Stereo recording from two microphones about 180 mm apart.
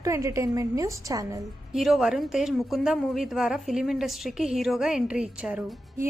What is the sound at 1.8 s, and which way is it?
A woman's voice, centre (ahead or behind).